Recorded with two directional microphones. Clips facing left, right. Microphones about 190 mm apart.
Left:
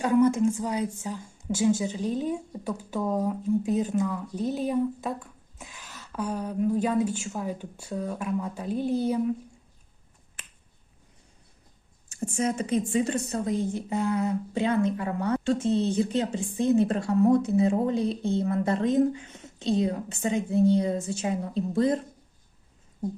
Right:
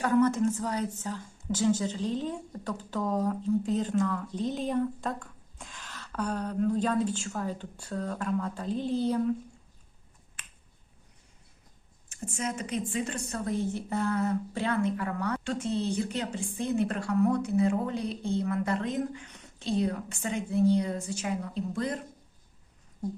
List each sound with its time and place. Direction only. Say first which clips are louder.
0.0 s a woman's voice: left 3 dB; 10° left (ahead or behind)
12.3 s a woman's voice: left 7 dB; 30° left (ahead or behind)